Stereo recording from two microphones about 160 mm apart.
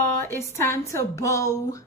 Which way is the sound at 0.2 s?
15° left (ahead or behind).